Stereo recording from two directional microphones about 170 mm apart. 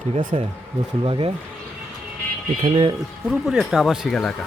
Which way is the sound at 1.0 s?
30° right (ahead or behind).